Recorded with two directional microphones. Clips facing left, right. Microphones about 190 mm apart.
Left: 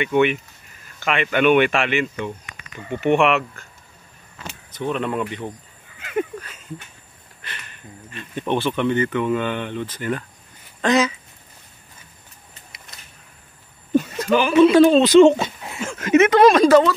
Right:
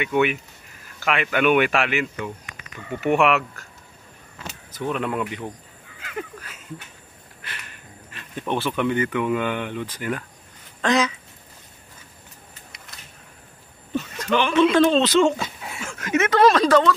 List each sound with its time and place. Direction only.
0.0 s speech: 5° right (ahead or behind)
4.7 s speech: 5° right (ahead or behind)
8.1 s speech: centre (ahead or behind)
10.8 s speech: 5° left (ahead or behind)
12.7 s a sound: 5° left (ahead or behind)
13.9 s speech: 10° left (ahead or behind)